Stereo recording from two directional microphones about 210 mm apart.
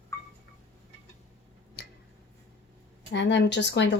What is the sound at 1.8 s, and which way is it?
Tick-tock, 50° left (ahead or behind).